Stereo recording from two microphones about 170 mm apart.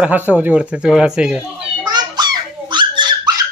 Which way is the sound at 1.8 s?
25° right (ahead or behind).